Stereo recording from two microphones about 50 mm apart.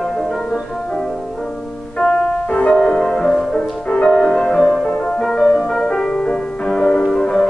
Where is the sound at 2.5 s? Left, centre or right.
Centre.